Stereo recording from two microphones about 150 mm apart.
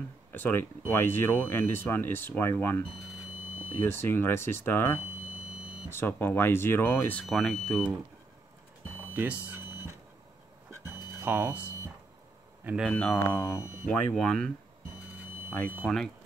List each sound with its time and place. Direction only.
0.3 s speech: 15° left (ahead or behind)
3.8 s speech: 15° left (ahead or behind)
9.1 s a sound: 10° right (ahead or behind)
11.2 s speech: 15° right (ahead or behind)
12.6 s speech: 5° right (ahead or behind)
12.9 s speech: 15° left (ahead or behind)
13.8 s speech: 5° left (ahead or behind)
15.8 s speech: 5° left (ahead or behind)